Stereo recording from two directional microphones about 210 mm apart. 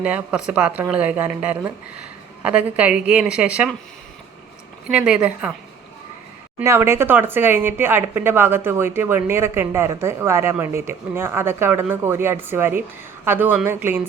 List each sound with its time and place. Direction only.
0.0 s a woman's voice: 5° right (ahead or behind)
4.9 s a woman's voice: 5° right (ahead or behind)
6.6 s speech: 10° right (ahead or behind)